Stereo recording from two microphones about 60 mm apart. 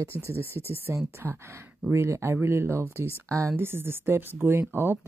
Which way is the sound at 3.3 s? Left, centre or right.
Right.